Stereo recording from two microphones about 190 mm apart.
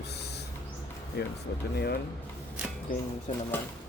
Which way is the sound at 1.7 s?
60° left (ahead or behind).